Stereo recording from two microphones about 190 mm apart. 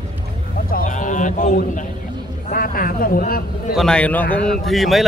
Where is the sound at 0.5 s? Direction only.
50° left (ahead or behind).